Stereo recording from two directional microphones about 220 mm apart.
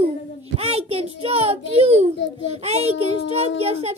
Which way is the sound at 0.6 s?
25° right (ahead or behind).